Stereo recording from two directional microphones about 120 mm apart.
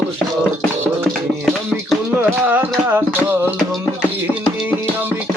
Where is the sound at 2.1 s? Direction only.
15° right (ahead or behind).